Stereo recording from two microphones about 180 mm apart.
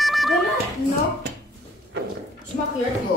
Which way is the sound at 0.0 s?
Centre (ahead or behind).